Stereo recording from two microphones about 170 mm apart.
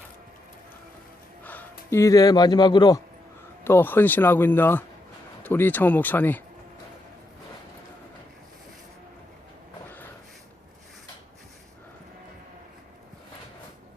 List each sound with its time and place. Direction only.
1.5 s speech: 10° left (ahead or behind)
3.6 s speech: 10° left (ahead or behind)